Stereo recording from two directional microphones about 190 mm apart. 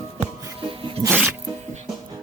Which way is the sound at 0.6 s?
30° right (ahead or behind).